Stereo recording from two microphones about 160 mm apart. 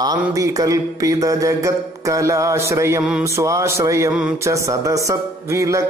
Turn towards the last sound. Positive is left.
turn(degrees=-20)  # may be behind; listen again after turning